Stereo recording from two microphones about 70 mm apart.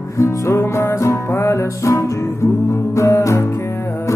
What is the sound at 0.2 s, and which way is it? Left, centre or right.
Music, left.